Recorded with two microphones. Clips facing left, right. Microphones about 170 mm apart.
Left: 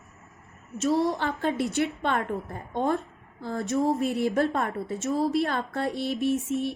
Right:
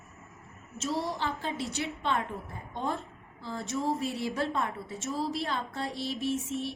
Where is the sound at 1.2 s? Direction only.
60° left (ahead or behind).